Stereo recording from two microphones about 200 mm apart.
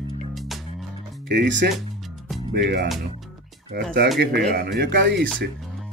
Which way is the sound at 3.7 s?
50° right (ahead or behind).